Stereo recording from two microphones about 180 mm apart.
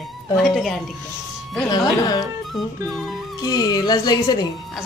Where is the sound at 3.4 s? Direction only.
20° left (ahead or behind).